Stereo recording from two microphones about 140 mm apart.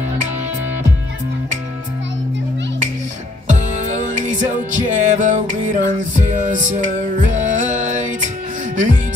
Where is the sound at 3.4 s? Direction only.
60° right (ahead or behind).